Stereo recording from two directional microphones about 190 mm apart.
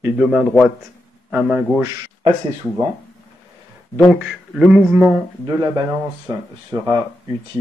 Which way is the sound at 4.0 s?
Centre (ahead or behind).